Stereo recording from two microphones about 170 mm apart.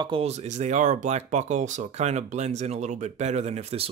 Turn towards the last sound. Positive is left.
turn(degrees=-40)  # may be behind; listen again after turning